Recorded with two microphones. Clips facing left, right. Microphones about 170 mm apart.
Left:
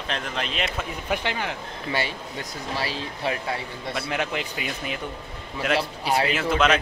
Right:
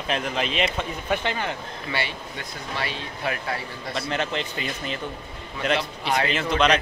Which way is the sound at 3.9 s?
5° left (ahead or behind).